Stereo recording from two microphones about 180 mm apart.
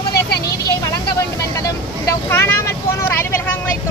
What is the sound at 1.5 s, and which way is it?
Vehicle, 15° left (ahead or behind).